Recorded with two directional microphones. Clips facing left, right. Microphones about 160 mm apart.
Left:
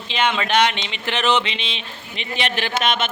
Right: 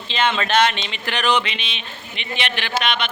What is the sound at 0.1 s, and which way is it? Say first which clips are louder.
Speech: even; 15° left (ahead or behind).